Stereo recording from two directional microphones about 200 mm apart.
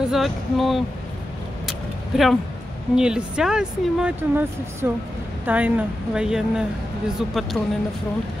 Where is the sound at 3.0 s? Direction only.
5° right (ahead or behind).